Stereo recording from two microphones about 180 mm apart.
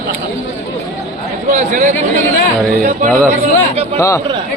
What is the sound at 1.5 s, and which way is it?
A man's voice, 45° right (ahead or behind).